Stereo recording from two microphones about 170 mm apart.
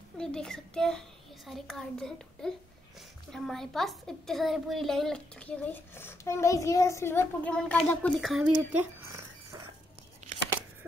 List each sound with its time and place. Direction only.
0.2 s a woman's voice: 5° left (ahead or behind)
8.7 s dog: 15° right (ahead or behind)